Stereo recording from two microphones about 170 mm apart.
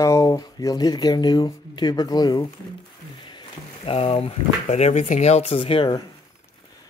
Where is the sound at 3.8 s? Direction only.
35° left (ahead or behind).